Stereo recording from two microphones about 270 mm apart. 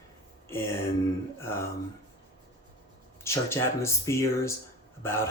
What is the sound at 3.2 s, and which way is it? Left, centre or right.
Speech, centre.